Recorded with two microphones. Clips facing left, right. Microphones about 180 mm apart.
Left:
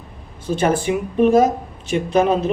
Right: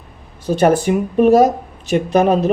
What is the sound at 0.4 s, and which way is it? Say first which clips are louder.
Speech: right 5 dB; 40° right (ahead or behind).